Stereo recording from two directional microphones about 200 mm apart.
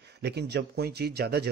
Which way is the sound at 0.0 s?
55° right (ahead or behind).